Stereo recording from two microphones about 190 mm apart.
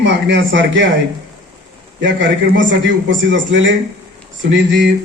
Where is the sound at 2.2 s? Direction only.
70° right (ahead or behind).